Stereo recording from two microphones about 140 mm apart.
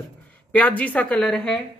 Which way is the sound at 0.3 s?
10° left (ahead or behind).